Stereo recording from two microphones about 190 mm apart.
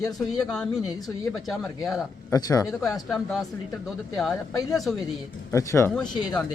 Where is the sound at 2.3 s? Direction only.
20° left (ahead or behind).